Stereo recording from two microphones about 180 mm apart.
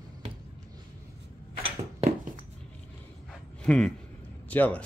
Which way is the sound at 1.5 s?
35° right (ahead or behind).